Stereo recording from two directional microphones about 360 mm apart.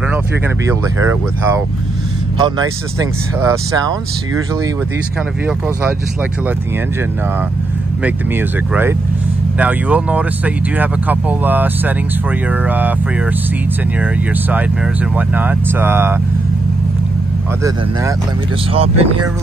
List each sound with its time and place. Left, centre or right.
3.0 s speech: centre
8.0 s speech: centre
15.1 s speech: centre
18.7 s speech: centre